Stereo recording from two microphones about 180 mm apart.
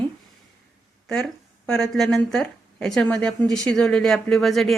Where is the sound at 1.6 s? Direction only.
Centre (ahead or behind).